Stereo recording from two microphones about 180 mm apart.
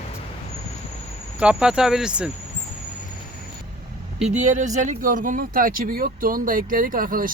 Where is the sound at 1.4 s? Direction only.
5° right (ahead or behind).